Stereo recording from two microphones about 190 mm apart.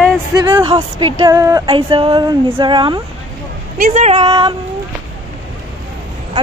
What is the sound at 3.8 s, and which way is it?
Speech, 45° right (ahead or behind).